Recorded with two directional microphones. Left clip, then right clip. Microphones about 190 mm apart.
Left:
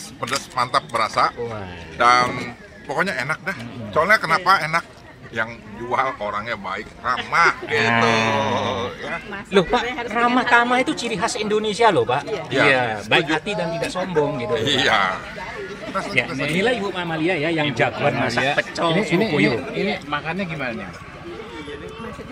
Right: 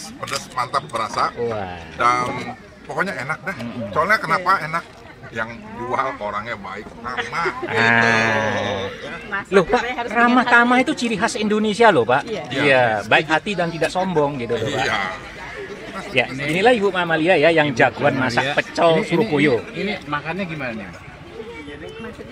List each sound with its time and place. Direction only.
0.6 s a man's voice: 10° left (ahead or behind)
7.8 s speech: 5° left (ahead or behind)
8.7 s a sound: 25° left (ahead or behind)
9.5 s a man's voice: centre (ahead or behind)
16.4 s speech: centre (ahead or behind)
19.0 s a man's voice: 25° left (ahead or behind)
19.7 s a man's voice: 5° left (ahead or behind)